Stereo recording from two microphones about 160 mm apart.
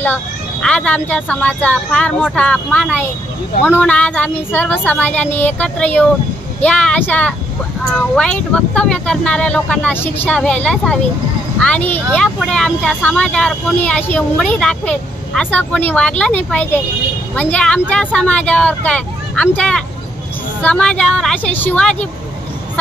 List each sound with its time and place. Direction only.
0.0 s speech: 10° left (ahead or behind)